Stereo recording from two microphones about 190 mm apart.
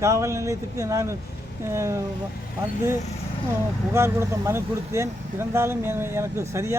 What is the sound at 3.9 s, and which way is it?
Speech, 15° right (ahead or behind).